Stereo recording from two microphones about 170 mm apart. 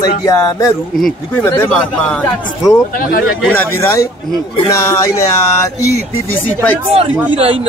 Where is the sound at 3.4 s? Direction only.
15° left (ahead or behind).